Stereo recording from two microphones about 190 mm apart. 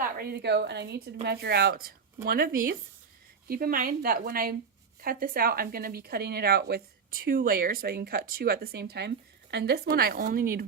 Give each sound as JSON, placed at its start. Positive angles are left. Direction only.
{"t": 0.2, "sound": "a woman's voice", "side_deg": -60}